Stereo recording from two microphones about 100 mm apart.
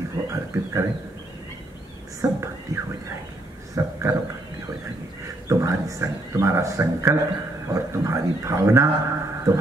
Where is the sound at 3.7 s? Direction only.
25° right (ahead or behind).